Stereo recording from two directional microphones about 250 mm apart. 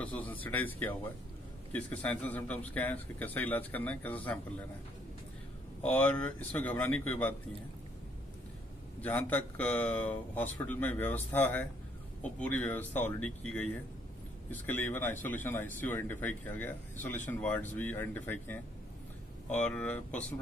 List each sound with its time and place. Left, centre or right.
0.0 s speech: centre
5.8 s speech: centre
9.0 s speech: centre
12.2 s speech: centre